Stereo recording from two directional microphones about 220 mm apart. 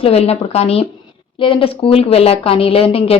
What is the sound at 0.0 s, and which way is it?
A woman's voice, 25° left (ahead or behind).